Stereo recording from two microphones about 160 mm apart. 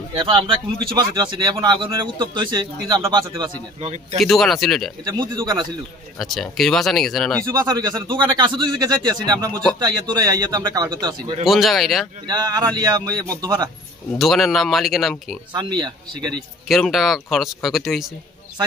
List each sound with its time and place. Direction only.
0.2 s speech: 30° right (ahead or behind)
3.8 s speech: 45° right (ahead or behind)
4.2 s speech: centre (ahead or behind)
5.0 s speech: 25° right (ahead or behind)
6.1 s speech: centre (ahead or behind)
7.5 s speech: 25° right (ahead or behind)
11.4 s speech: centre (ahead or behind)
12.3 s speech: 25° right (ahead or behind)
14.1 s speech: centre (ahead or behind)
15.5 s speech: 30° right (ahead or behind)
16.6 s speech: centre (ahead or behind)